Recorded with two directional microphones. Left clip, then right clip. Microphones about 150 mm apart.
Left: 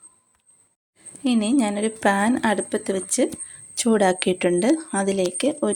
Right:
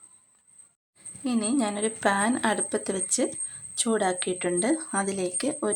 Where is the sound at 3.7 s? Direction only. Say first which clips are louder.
Left 7 dB; 20° left (ahead or behind).